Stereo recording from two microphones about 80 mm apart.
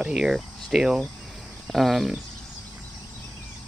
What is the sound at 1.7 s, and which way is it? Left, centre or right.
Speech, centre.